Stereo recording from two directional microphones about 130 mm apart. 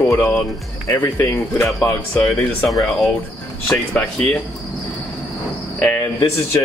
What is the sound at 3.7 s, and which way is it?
Speech, 10° left (ahead or behind).